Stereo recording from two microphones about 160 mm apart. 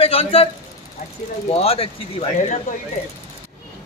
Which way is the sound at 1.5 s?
35° left (ahead or behind).